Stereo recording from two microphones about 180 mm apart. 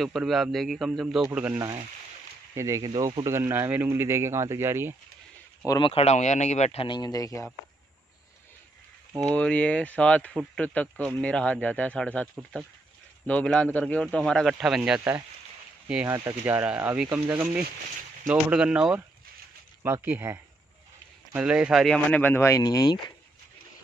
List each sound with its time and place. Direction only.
0.0 s speech: centre (ahead or behind); by 3.3 s 25° right (ahead or behind)
3.3 s speech: 15° right (ahead or behind)
5.7 s speech: 30° left (ahead or behind)
9.3 s speech: 5° left (ahead or behind)
13.3 s speech: 5° left (ahead or behind); by 23.1 s 20° left (ahead or behind)